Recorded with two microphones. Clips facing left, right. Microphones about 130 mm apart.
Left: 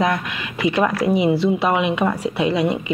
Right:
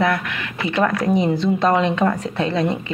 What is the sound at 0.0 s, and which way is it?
Speech, 15° left (ahead or behind).